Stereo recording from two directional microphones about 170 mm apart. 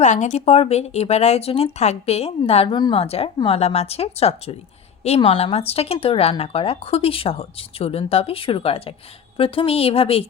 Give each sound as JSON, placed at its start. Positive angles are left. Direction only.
{"t": 0.0, "sound": "speech", "side_deg": 45}